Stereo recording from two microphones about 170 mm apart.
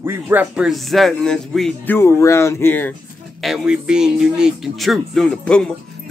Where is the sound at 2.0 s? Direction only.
15° left (ahead or behind).